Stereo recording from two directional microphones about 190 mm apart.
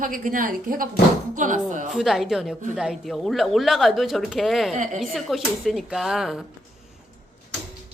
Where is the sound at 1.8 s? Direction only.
Centre (ahead or behind).